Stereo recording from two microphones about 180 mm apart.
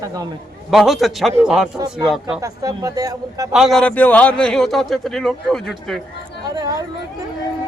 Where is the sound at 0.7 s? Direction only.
Centre (ahead or behind).